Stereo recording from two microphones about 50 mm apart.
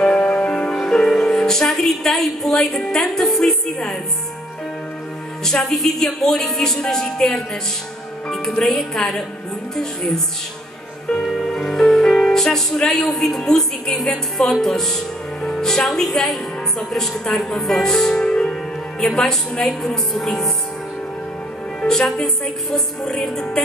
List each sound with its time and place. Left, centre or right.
0.0 s music: centre
5.4 s a woman's voice: centre
11.1 s music: centre
12.7 s a woman's voice: centre
21.8 s a woman's voice: centre